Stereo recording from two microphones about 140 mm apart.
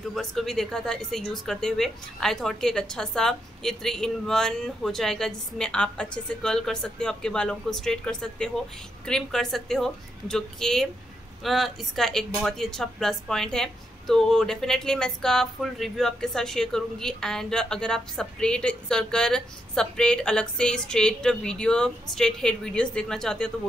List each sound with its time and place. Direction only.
0.1 s speech: centre (ahead or behind)